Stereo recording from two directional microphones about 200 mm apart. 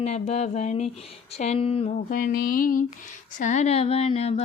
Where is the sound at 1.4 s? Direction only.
30° left (ahead or behind).